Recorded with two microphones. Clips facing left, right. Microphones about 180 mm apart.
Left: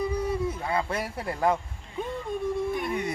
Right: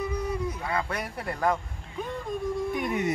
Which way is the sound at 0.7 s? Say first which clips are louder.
Left 2 dB; 25° left (ahead or behind).